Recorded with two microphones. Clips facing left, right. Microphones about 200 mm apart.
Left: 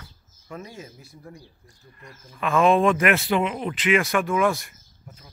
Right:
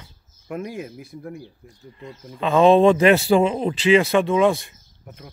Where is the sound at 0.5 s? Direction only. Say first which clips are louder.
Right 8 dB; 60° right (ahead or behind).